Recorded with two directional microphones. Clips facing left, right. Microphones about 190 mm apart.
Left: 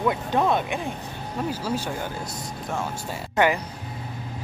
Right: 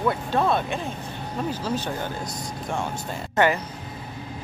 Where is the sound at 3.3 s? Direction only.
15° left (ahead or behind).